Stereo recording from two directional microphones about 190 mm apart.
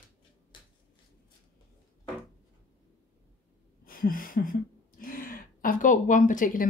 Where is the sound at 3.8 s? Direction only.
50° left (ahead or behind).